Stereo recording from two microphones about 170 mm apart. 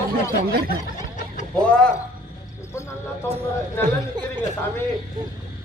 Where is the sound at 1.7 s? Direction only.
5° left (ahead or behind).